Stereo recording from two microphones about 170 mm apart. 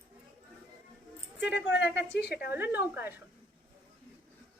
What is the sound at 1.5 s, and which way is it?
Speech, 90° left.